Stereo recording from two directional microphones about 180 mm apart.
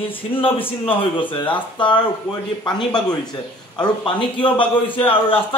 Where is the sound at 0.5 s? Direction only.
30° left (ahead or behind).